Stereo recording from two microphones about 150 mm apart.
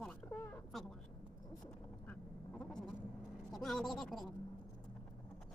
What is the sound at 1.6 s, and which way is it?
Speech, 5° left (ahead or behind).